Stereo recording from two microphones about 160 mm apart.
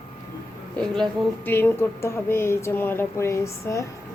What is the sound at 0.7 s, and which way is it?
Speech, 5° left (ahead or behind).